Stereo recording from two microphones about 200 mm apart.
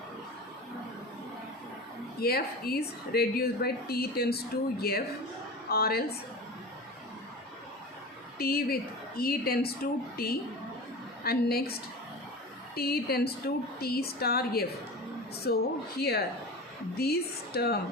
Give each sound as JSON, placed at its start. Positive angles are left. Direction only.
{"t": 2.2, "sound": "speech", "side_deg": 50}
{"t": 8.4, "sound": "speech", "side_deg": 50}
{"t": 12.7, "sound": "speech", "side_deg": 50}